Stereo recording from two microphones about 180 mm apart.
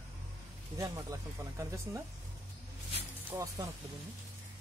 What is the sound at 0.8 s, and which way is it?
Speech, 20° right (ahead or behind).